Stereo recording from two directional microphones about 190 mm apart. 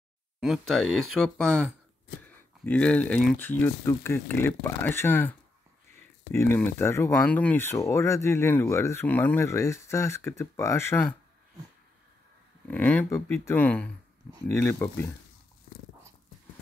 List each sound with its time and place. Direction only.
0.4 s speech: centre (ahead or behind)
2.6 s speech: 5° left (ahead or behind)
6.3 s speech: 10° left (ahead or behind)
12.6 s speech: 10° left (ahead or behind)
15.7 s dog: 50° left (ahead or behind)